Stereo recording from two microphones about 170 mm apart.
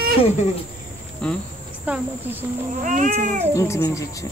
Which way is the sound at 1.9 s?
10° right (ahead or behind).